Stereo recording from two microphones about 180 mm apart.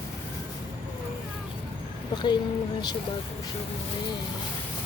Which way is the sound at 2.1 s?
25° left (ahead or behind).